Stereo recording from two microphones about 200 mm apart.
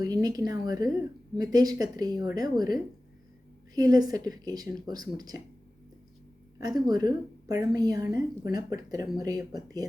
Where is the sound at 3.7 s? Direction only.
20° right (ahead or behind).